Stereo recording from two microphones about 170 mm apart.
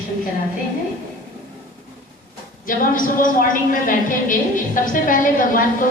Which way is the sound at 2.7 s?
55° left (ahead or behind).